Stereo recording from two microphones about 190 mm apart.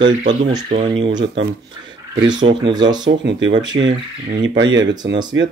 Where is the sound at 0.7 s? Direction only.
30° right (ahead or behind).